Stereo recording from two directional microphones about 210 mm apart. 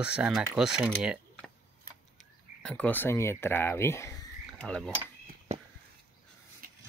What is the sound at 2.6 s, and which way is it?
Speech, 5° left (ahead or behind).